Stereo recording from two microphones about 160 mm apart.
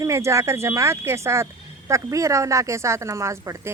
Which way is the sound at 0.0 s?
20° right (ahead or behind).